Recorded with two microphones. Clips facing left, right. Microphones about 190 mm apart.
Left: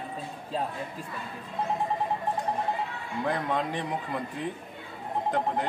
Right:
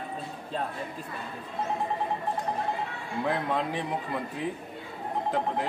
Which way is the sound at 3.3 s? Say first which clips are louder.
Even; 5° right (ahead or behind).